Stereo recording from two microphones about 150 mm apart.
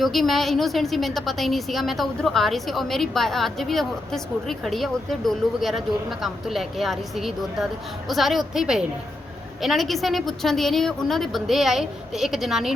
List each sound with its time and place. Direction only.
0.0 s a woman's voice: centre (ahead or behind)